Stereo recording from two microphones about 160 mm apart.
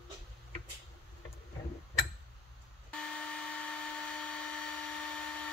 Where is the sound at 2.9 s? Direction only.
5° left (ahead or behind).